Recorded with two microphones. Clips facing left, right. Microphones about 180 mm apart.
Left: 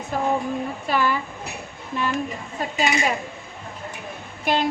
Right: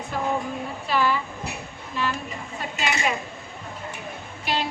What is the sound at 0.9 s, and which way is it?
Speech, 50° left (ahead or behind).